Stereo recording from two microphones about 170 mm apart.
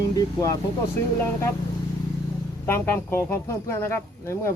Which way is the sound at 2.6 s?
15° left (ahead or behind).